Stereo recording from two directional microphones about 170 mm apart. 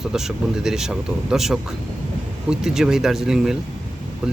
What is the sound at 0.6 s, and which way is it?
Speech, 5° right (ahead or behind).